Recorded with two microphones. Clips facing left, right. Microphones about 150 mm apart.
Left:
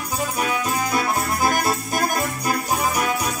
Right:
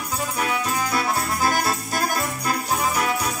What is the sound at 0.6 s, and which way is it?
Music, 15° left (ahead or behind).